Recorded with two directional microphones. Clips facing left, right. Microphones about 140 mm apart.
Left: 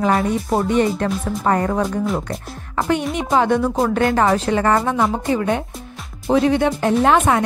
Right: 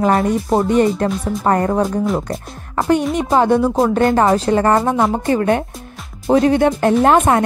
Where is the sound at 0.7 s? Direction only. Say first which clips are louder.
Right 3 dB; 40° right (ahead or behind).